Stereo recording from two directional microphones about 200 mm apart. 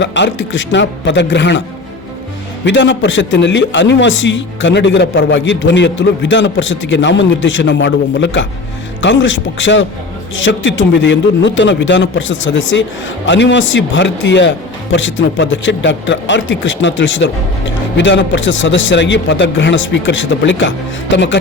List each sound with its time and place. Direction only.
0.0 s a man's voice: 60° left (ahead or behind)
2.6 s a man's voice: 65° left (ahead or behind)